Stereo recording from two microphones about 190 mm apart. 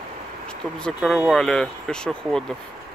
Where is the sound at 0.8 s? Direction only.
Centre (ahead or behind).